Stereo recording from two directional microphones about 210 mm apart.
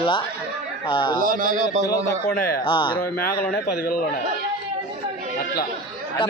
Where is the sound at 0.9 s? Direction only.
25° left (ahead or behind).